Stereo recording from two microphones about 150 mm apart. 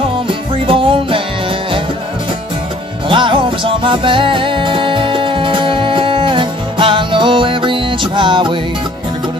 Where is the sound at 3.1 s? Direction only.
35° right (ahead or behind).